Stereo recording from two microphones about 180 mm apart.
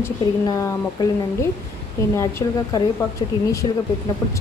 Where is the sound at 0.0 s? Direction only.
15° left (ahead or behind).